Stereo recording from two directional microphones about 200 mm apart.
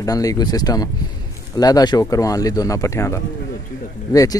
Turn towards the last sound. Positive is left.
turn(degrees=20)  # may be behind; listen again after turning